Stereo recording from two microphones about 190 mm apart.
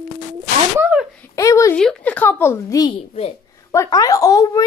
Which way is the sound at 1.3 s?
15° left (ahead or behind).